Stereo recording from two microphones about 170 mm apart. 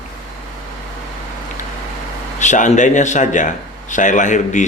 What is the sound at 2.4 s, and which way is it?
A man's voice, 45° left (ahead or behind).